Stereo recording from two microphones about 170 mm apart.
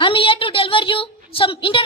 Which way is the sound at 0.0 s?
30° left (ahead or behind).